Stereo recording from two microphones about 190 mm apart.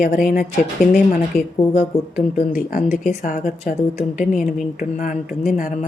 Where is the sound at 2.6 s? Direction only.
45° left (ahead or behind).